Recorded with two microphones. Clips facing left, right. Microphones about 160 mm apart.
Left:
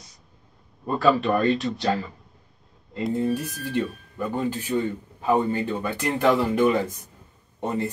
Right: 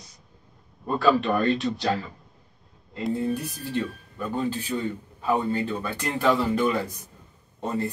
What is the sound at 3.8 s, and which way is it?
A man's voice, 15° left (ahead or behind).